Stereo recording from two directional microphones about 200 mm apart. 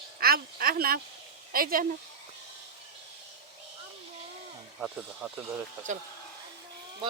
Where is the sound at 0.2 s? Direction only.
50° right (ahead or behind).